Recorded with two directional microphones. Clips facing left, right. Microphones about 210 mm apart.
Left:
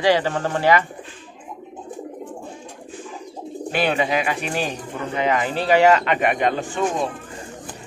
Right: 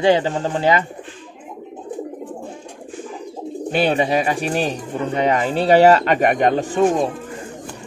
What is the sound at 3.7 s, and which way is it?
Speech, 30° right (ahead or behind).